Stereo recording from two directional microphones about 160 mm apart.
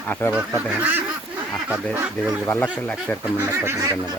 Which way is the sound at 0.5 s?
10° right (ahead or behind).